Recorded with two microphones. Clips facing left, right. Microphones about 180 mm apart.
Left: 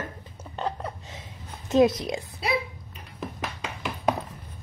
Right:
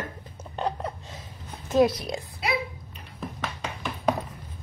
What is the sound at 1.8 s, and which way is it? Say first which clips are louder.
Speech: left 1 dB; 25° left (ahead or behind).